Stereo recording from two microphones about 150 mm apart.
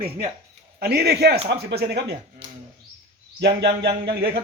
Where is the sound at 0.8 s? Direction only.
90° right.